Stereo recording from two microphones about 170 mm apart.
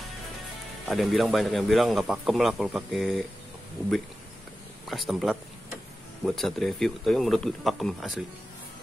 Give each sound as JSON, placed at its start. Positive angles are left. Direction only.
{"t": 0.8, "sound": "a man's voice", "side_deg": 0}
{"t": 4.8, "sound": "a man's voice", "side_deg": 0}